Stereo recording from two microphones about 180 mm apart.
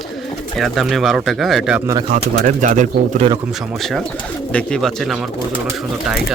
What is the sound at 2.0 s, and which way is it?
Speech, 45° right (ahead or behind).